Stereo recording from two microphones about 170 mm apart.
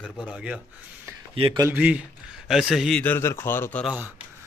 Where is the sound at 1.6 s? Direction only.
10° right (ahead or behind); by 3.8 s 15° left (ahead or behind).